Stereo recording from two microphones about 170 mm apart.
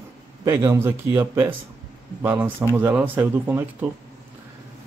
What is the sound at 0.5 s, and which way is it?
Speech, 15° right (ahead or behind).